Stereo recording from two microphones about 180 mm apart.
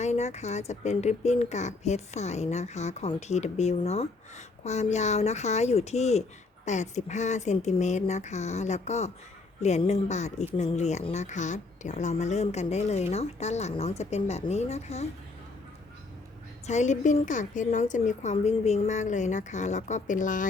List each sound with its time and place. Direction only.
0.0 s speech: 40° left (ahead or behind)
16.6 s speech: 40° left (ahead or behind)